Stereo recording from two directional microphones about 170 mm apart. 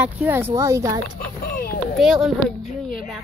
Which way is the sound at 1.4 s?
55° left (ahead or behind).